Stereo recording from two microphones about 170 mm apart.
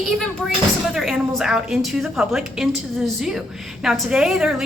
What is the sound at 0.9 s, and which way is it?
A woman's voice, centre (ahead or behind).